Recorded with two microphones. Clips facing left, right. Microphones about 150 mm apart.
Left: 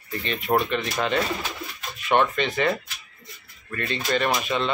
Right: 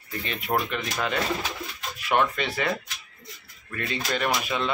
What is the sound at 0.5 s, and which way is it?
Speech, 20° left (ahead or behind).